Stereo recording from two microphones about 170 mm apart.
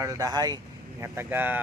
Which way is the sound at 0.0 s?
20° right (ahead or behind).